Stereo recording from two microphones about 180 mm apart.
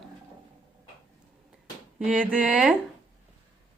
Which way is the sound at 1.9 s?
5° right (ahead or behind).